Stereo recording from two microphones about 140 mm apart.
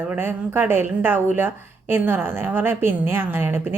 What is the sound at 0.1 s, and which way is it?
A woman's voice, 15° right (ahead or behind).